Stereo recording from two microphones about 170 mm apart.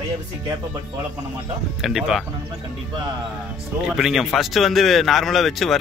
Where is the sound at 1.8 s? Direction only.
Centre (ahead or behind).